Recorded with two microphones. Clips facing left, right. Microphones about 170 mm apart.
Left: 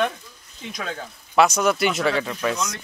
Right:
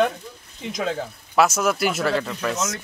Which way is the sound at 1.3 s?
5° right (ahead or behind).